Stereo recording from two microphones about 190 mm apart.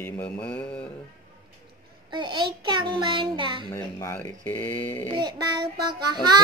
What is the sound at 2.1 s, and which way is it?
A child's voice, 25° right (ahead or behind).